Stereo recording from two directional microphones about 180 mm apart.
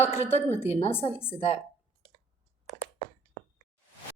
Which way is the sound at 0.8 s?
30° left (ahead or behind).